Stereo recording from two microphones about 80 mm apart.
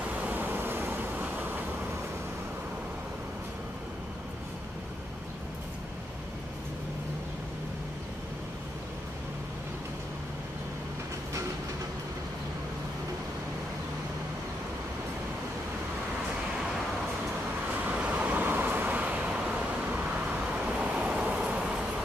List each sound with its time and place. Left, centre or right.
0.0 s vehicle: centre
17.8 s vehicle: centre